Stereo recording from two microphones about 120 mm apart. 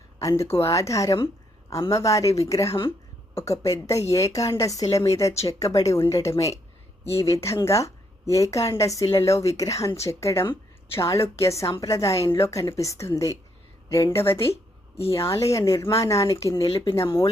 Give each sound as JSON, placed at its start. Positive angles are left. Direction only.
{"t": 0.2, "sound": "a woman's voice", "side_deg": 25}
{"t": 14.5, "sound": "a sound", "side_deg": 55}
{"t": 15.1, "sound": "a woman's voice", "side_deg": 25}